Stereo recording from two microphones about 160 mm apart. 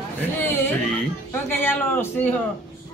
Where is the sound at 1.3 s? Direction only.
15° left (ahead or behind).